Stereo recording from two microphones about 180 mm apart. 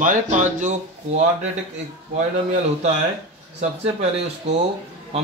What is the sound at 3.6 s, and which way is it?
Speech, 40° right (ahead or behind).